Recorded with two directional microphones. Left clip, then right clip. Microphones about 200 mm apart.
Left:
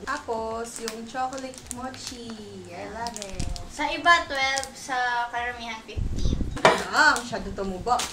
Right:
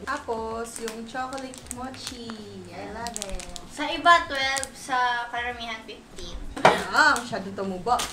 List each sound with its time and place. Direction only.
0.0 s a sound: centre (ahead or behind)
3.7 s a woman's voice: 25° right (ahead or behind)
6.6 s dishes: centre (ahead or behind)
7.2 s a woman's voice: 5° right (ahead or behind)